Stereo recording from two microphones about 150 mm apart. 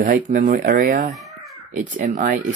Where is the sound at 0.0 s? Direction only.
65° right (ahead or behind).